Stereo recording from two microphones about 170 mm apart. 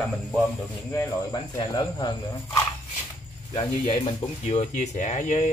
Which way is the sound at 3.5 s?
35° left (ahead or behind).